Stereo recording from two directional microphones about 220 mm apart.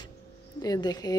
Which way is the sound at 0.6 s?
15° left (ahead or behind).